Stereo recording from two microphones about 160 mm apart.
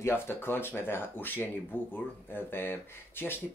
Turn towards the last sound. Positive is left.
turn(degrees=15)  # may be behind; listen again after turning